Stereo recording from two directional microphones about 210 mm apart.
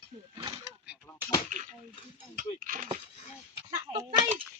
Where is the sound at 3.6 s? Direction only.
20° right (ahead or behind).